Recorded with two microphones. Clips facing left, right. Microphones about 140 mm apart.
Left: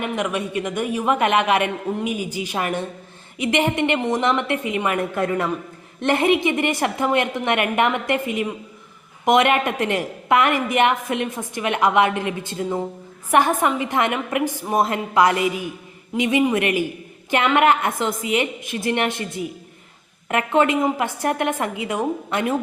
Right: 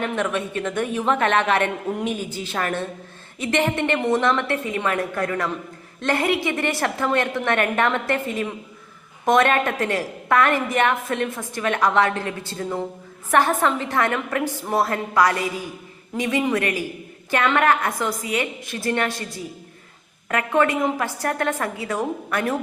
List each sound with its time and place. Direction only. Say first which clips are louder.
0.0 s a woman's voice: even; 10° left (ahead or behind)